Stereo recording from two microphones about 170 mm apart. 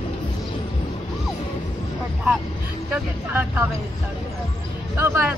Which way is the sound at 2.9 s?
10° right (ahead or behind).